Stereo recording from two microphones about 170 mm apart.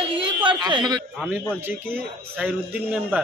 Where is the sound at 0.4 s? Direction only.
25° right (ahead or behind).